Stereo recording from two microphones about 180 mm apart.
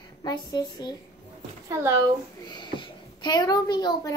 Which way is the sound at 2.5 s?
25° left (ahead or behind).